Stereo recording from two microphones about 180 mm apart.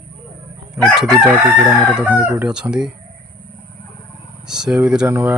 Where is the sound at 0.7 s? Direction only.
Centre (ahead or behind).